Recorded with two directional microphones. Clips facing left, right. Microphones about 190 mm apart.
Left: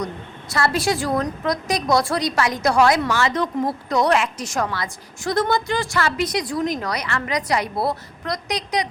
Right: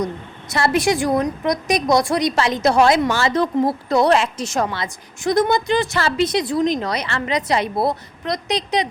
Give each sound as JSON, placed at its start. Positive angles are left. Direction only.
{"t": 0.5, "sound": "a woman's voice", "side_deg": -20}